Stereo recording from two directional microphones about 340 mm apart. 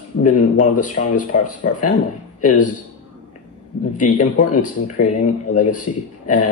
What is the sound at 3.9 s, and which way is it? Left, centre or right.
A man's voice, left.